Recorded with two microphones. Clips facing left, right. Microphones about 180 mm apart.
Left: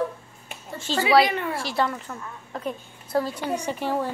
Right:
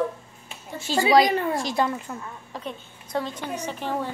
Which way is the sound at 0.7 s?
10° right (ahead or behind).